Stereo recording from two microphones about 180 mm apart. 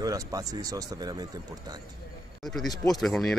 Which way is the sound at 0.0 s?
20° right (ahead or behind).